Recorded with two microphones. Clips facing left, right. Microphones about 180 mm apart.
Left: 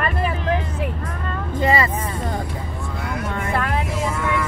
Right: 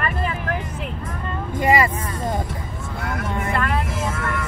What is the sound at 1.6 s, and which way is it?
Vehicle, 15° right (ahead or behind).